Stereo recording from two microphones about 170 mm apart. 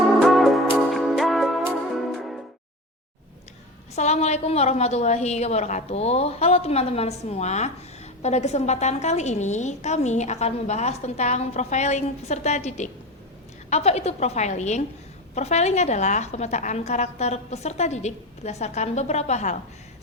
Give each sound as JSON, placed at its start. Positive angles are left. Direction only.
{"t": 0.2, "sound": "music", "side_deg": 0}
{"t": 3.9, "sound": "a woman's voice", "side_deg": 40}